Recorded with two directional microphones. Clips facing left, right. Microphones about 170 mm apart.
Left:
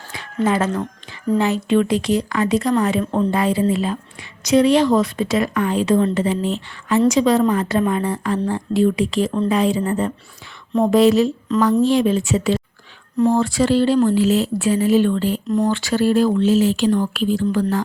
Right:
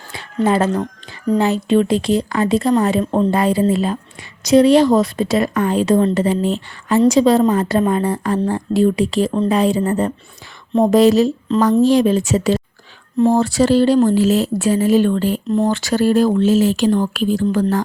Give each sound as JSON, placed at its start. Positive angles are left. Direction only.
{"t": 0.1, "sound": "a sound", "side_deg": -35}
{"t": 1.4, "sound": "a woman's voice", "side_deg": -35}
{"t": 3.3, "sound": "a woman's voice", "side_deg": -40}